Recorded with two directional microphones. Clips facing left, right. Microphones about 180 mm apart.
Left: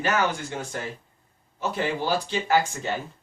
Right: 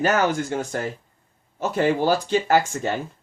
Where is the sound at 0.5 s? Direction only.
50° right (ahead or behind).